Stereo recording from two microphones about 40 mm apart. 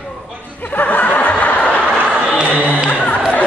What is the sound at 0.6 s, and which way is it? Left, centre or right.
Snicker, left.